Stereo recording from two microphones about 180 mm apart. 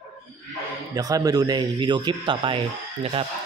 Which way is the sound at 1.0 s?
20° right (ahead or behind).